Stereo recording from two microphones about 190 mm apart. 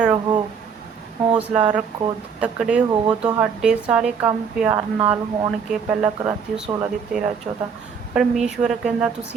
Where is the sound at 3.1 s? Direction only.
20° right (ahead or behind).